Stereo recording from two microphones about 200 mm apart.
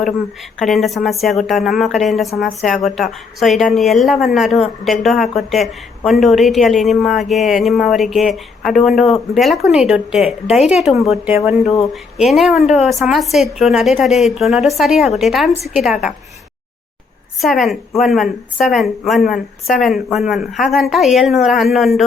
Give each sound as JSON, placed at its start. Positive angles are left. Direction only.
{"t": 0.6, "sound": "speech", "side_deg": 0}
{"t": 17.4, "sound": "speech", "side_deg": 0}